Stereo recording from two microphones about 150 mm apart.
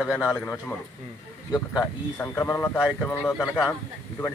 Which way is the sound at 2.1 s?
15° left (ahead or behind).